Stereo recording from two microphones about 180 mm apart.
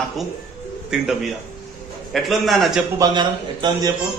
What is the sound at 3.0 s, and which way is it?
Speech, 25° right (ahead or behind).